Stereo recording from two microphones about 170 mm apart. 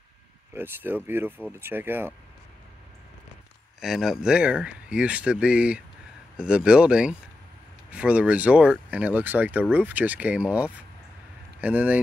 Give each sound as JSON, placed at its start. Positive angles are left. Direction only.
{"t": 0.6, "sound": "speech", "side_deg": -10}
{"t": 3.8, "sound": "speech", "side_deg": 0}